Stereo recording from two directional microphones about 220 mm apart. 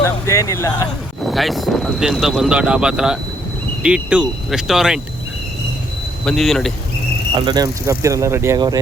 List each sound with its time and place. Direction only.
0.0 s speech: 15° left (ahead or behind)
1.3 s speech: centre (ahead or behind)
6.2 s speech: centre (ahead or behind)
7.3 s speech: 20° right (ahead or behind)